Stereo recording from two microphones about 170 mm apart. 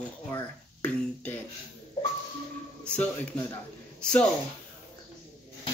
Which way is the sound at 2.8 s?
10° left (ahead or behind).